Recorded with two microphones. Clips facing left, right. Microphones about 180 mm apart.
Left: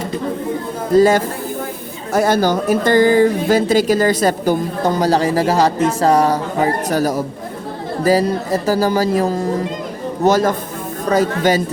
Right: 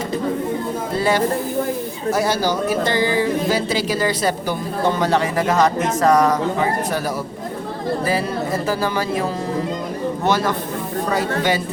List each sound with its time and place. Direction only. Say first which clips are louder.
0.9 s speech: left 7 dB; 45° left (ahead or behind)
8.6 s speech: left 5 dB; 40° left (ahead or behind)